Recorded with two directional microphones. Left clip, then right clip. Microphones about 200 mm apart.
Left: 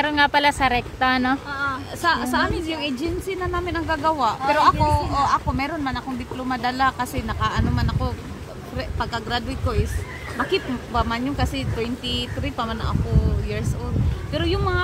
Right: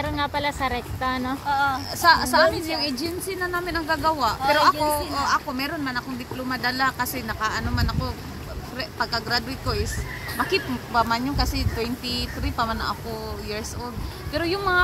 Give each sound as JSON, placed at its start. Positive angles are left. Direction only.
{"t": 0.0, "sound": "speech", "side_deg": 35}
{"t": 1.5, "sound": "a sound", "side_deg": -40}
{"t": 2.0, "sound": "a woman's voice", "side_deg": 10}
{"t": 14.3, "sound": "a woman's voice", "side_deg": 10}